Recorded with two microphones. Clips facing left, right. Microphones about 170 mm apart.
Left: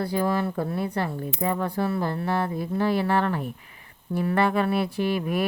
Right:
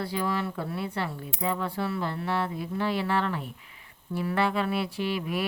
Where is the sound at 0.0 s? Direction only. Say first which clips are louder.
Left 5 dB; 45° left (ahead or behind).